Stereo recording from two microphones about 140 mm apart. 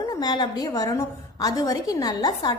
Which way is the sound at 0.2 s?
30° left (ahead or behind).